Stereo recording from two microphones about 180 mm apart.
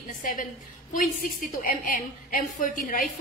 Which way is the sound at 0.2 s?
45° left (ahead or behind).